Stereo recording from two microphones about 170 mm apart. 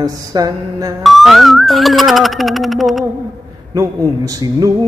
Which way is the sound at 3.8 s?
20° right (ahead or behind).